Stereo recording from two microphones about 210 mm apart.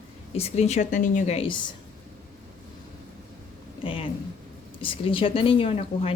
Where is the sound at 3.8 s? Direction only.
25° left (ahead or behind).